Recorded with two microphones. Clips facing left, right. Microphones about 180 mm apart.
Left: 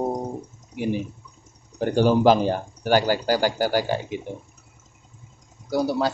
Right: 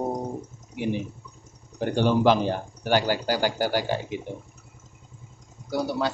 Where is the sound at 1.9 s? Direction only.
40° left (ahead or behind).